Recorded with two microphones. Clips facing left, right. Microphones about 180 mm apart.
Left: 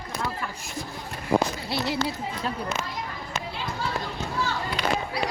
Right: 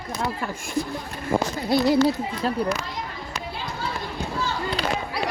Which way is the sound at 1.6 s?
45° right (ahead or behind).